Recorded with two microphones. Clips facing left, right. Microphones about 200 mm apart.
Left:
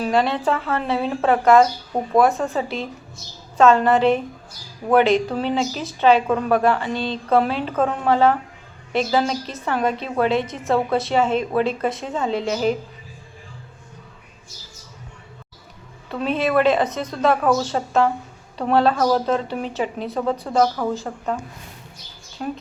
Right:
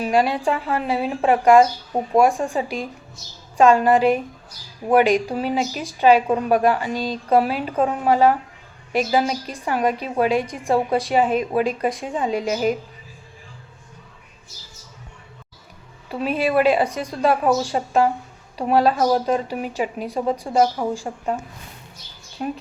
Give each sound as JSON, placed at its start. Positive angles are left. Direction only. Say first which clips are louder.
{"t": 0.0, "sound": "speech", "louder": "even", "side_deg": -10}
{"t": 16.0, "sound": "a woman's voice", "louder": "even", "side_deg": -10}
{"t": 22.4, "sound": "speech", "louder": "right 1 dB", "side_deg": -10}